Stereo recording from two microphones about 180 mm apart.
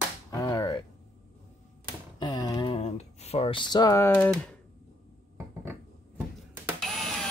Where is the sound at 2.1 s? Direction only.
20° left (ahead or behind).